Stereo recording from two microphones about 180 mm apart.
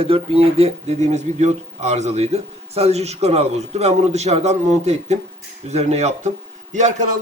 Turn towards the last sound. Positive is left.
turn(degrees=-40)  # may be behind; listen again after turning